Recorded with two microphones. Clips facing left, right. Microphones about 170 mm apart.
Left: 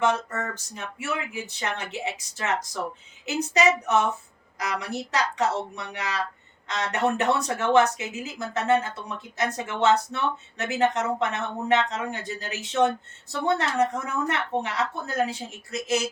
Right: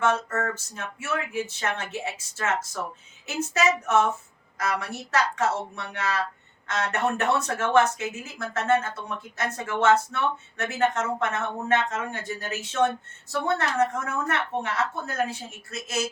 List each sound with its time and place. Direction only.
0.0 s a woman's voice: 15° left (ahead or behind)